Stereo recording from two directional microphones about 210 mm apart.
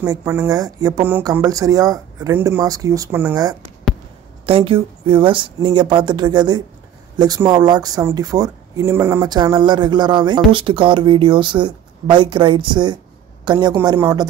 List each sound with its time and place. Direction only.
0.0 s speech: 15° right (ahead or behind)
4.5 s speech: 25° right (ahead or behind)